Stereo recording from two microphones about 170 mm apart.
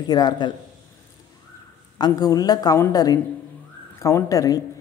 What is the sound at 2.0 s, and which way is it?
A woman's voice, 20° left (ahead or behind).